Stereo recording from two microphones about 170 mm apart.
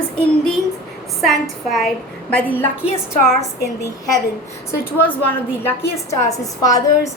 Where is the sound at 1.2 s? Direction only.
Centre (ahead or behind).